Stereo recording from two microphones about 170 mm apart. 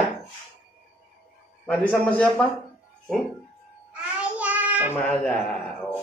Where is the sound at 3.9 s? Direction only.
5° right (ahead or behind).